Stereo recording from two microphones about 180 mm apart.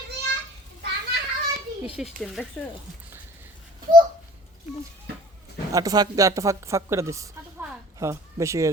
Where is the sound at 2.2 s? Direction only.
Centre (ahead or behind).